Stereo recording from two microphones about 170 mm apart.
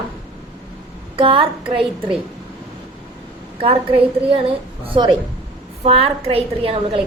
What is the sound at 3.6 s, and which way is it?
A woman's voice, 35° right (ahead or behind).